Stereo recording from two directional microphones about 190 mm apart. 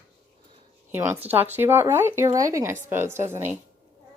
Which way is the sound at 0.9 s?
15° right (ahead or behind).